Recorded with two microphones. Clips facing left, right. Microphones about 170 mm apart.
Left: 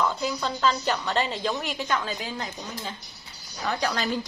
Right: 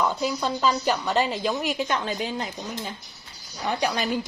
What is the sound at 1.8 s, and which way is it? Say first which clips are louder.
Speech: right 2 dB; 20° right (ahead or behind).